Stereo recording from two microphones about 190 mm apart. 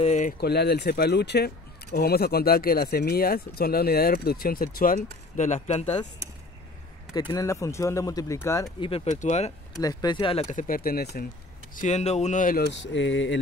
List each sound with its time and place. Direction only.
0.0 s speech: 40° left (ahead or behind)
0.4 s speech: 60° left (ahead or behind)
5.4 s speech: 35° left (ahead or behind)
7.2 s speech: 20° left (ahead or behind)
8.8 s speech: 35° left (ahead or behind)
9.8 s speech: 20° left (ahead or behind); by 11.2 s 55° left (ahead or behind)
11.7 s speech: 40° left (ahead or behind); by 13.4 s 75° left (ahead or behind)